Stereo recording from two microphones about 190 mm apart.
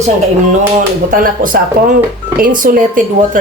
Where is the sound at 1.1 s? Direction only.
45° right (ahead or behind).